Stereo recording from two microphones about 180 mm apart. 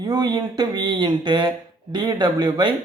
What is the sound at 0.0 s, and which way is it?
Speech, 20° right (ahead or behind).